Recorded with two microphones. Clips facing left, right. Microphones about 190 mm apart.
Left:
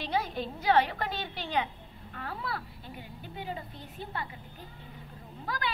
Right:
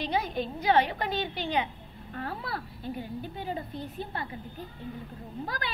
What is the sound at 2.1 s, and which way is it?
A woman's voice, 40° right (ahead or behind).